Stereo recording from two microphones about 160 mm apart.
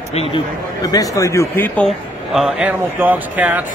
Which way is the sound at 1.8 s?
Centre (ahead or behind).